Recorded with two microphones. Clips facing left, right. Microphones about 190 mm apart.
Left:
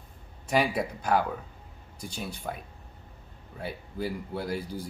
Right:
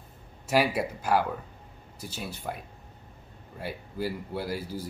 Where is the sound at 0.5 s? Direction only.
5° right (ahead or behind).